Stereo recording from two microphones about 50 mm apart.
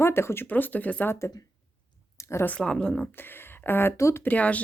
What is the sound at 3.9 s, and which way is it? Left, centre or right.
Speech, left.